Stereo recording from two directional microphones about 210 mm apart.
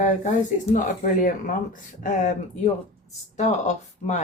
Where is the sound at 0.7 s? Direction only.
40° left (ahead or behind).